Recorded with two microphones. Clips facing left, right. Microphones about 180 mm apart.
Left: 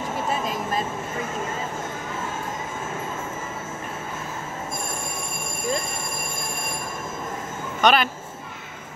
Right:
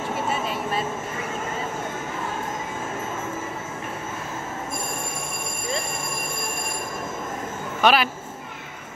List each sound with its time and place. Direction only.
0.3 s vehicle: 40° left (ahead or behind)
7.8 s speech: 5° right (ahead or behind)